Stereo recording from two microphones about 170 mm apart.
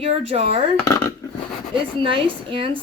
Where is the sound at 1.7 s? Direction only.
30° right (ahead or behind).